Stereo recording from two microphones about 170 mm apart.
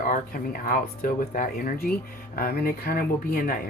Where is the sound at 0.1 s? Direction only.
55° left (ahead or behind).